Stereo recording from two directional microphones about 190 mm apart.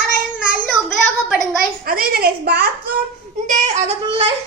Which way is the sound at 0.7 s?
5° left (ahead or behind).